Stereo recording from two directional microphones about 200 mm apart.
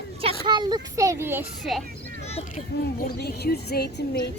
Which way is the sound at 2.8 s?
50° left (ahead or behind).